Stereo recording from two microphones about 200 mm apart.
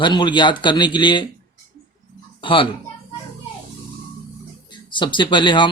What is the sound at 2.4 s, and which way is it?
Speech, 25° left (ahead or behind).